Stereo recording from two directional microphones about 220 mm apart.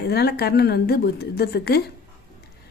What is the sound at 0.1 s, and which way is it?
A woman's voice, 45° left (ahead or behind).